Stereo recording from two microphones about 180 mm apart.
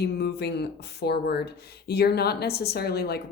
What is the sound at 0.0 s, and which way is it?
Speech, 65° left (ahead or behind).